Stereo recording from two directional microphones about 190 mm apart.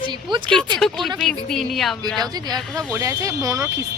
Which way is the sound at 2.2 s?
20° right (ahead or behind).